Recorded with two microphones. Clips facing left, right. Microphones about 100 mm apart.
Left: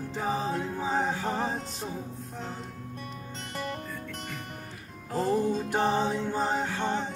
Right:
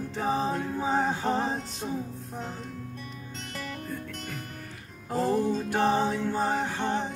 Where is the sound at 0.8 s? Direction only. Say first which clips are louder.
Right 3 dB; 15° right (ahead or behind).